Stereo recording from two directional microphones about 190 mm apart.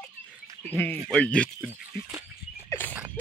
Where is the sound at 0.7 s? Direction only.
10° left (ahead or behind).